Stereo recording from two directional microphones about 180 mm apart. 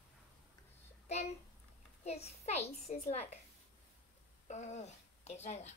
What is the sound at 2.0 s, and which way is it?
A woman's voice, 35° left (ahead or behind).